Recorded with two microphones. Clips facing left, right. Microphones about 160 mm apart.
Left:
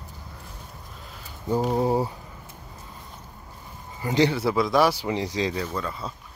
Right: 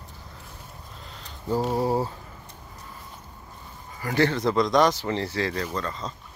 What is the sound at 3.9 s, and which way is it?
Speech, 20° left (ahead or behind).